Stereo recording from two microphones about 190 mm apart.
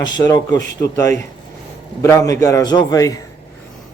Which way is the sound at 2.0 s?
15° left (ahead or behind).